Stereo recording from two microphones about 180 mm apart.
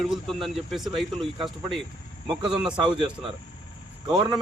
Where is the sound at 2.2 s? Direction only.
25° right (ahead or behind).